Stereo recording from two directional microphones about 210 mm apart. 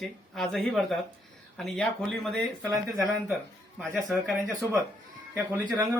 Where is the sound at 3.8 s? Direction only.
Centre (ahead or behind).